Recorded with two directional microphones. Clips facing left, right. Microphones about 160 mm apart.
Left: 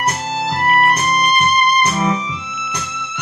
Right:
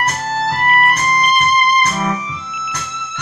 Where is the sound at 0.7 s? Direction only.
30° left (ahead or behind).